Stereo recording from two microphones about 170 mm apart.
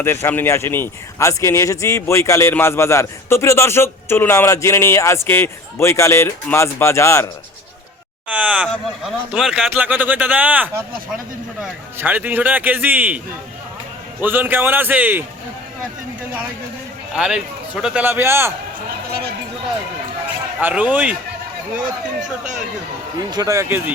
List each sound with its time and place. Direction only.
0.0 s speech: 15° left (ahead or behind)
8.3 s speech: 10° right (ahead or behind)
14.2 s speech: 10° right (ahead or behind)
17.2 s speech: 5° right (ahead or behind)
20.6 s speech: 10° right (ahead or behind)
23.3 s speech: 20° right (ahead or behind)